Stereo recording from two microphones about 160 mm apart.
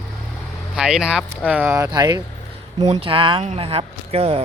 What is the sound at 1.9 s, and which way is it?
Speech, 25° right (ahead or behind).